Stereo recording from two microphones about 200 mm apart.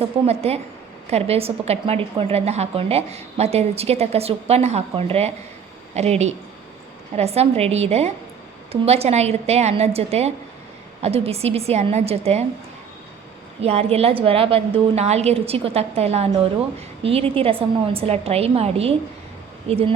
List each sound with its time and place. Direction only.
0.0 s a woman's voice: 30° right (ahead or behind)
13.6 s a woman's voice: 30° right (ahead or behind)